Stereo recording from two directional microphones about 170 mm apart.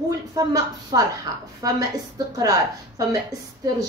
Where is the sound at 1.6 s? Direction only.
20° right (ahead or behind).